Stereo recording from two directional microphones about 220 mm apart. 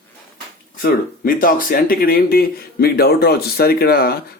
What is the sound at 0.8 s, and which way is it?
Speech, 40° left (ahead or behind).